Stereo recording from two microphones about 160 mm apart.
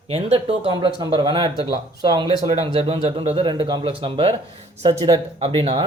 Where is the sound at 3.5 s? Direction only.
25° right (ahead or behind).